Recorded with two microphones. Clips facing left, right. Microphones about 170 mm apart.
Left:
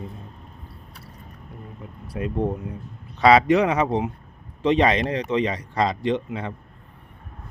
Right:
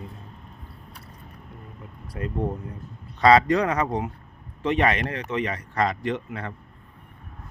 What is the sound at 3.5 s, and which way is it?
Speech, 20° left (ahead or behind).